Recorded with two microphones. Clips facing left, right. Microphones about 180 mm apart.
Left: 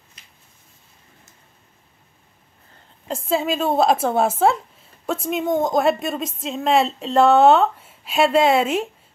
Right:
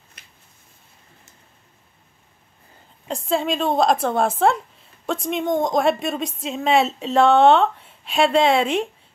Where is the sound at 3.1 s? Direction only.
Centre (ahead or behind).